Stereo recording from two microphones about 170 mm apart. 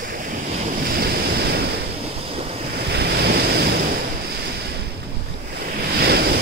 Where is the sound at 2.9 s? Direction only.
70° right (ahead or behind).